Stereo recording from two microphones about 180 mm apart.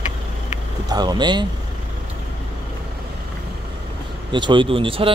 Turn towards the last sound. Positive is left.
turn(degrees=-30)  # may be behind; listen again after turning